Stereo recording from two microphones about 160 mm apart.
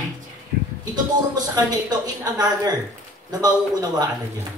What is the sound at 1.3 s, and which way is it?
A woman's voice, 25° right (ahead or behind).